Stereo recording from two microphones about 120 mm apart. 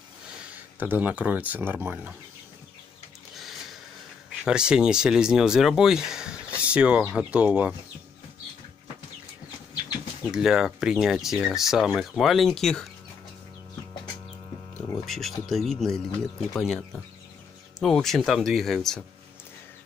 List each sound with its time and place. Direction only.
0.7 s speech: 15° right (ahead or behind)
4.5 s speech: 5° right (ahead or behind)
10.3 s speech: 5° right (ahead or behind)
15.0 s speech: centre (ahead or behind)